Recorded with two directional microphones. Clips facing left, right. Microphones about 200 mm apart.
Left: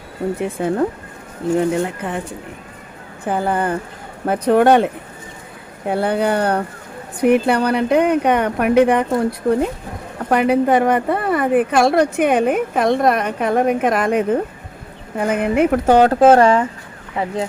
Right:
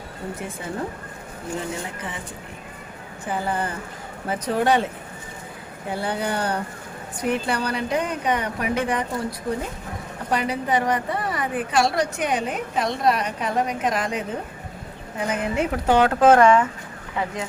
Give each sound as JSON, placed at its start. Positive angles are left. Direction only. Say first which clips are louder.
{"t": 0.4, "sound": "a woman's voice", "louder": "left 12 dB", "side_deg": 60}
{"t": 3.2, "sound": "a woman's voice", "louder": "left 7 dB", "side_deg": 55}
{"t": 5.9, "sound": "a woman's voice", "louder": "left 8 dB", "side_deg": 60}
{"t": 16.0, "sound": "speech", "louder": "left 4 dB", "side_deg": 35}